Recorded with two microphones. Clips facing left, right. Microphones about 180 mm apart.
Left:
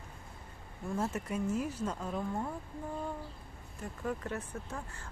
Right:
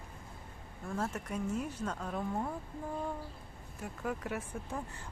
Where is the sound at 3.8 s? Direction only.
5° right (ahead or behind).